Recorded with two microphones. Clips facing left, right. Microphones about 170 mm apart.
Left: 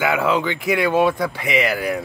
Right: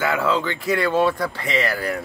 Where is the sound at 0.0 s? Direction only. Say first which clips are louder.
Left 2 dB; 15° left (ahead or behind).